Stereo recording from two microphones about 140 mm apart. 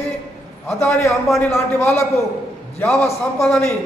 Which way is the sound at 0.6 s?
15° left (ahead or behind).